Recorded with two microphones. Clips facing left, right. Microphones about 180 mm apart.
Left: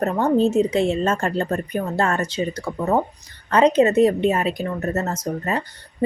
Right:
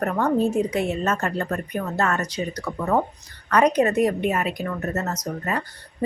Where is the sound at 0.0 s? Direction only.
25° left (ahead or behind).